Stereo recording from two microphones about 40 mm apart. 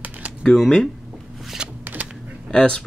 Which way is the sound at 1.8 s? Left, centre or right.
Right.